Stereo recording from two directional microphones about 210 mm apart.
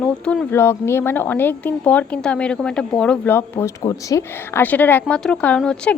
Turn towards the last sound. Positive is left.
turn(degrees=5)  # may be behind; listen again after turning